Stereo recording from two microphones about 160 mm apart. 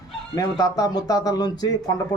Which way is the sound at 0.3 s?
25° left (ahead or behind).